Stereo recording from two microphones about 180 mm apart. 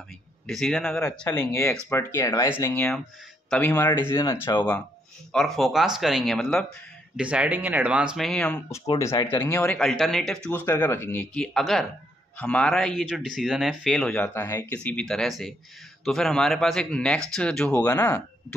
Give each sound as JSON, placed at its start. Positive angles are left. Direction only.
{"t": 0.5, "sound": "speech", "side_deg": 0}
{"t": 4.2, "sound": "speech", "side_deg": 25}
{"t": 5.3, "sound": "speech", "side_deg": 0}
{"t": 8.6, "sound": "speech", "side_deg": 15}
{"t": 9.8, "sound": "speech", "side_deg": 0}
{"t": 17.8, "sound": "speech", "side_deg": 20}